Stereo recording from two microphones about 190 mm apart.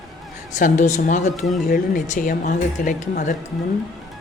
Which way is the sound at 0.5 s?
40° left (ahead or behind).